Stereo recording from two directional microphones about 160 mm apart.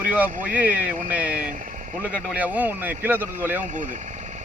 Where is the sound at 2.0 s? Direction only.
10° right (ahead or behind).